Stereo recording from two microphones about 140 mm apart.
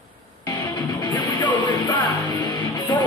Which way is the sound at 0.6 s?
30° left (ahead or behind).